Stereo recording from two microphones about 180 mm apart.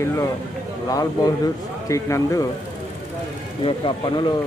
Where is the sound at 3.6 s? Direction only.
25° left (ahead or behind).